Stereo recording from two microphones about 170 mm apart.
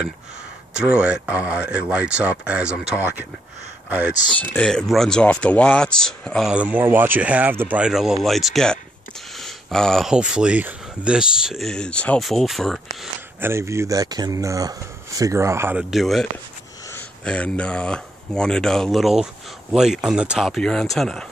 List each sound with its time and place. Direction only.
0.7 s speech: 5° right (ahead or behind)
4.6 s speech: 5° left (ahead or behind)
6.5 s speech: 10° right (ahead or behind)
13.4 s speech: 15° right (ahead or behind)
15.9 s speech: centre (ahead or behind)